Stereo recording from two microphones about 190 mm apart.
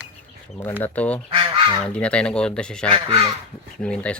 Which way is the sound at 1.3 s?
30° right (ahead or behind).